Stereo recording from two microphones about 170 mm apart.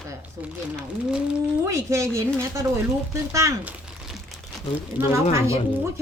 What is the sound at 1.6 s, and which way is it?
A woman's voice, 15° right (ahead or behind).